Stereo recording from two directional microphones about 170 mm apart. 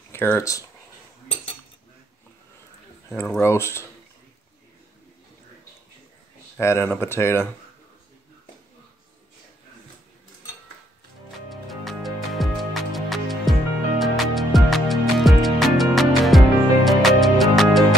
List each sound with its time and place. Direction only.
0.1 s speech: 15° left (ahead or behind)
3.3 s speech: 15° left (ahead or behind)
6.5 s speech: 15° left (ahead or behind)
11.8 s music: centre (ahead or behind)